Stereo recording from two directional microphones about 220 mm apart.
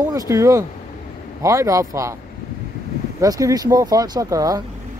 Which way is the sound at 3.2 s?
15° right (ahead or behind).